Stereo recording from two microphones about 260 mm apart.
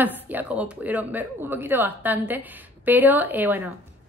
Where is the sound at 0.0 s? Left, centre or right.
Centre.